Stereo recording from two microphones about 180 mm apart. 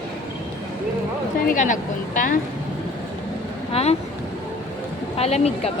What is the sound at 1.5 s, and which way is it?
Speech, 45° left (ahead or behind).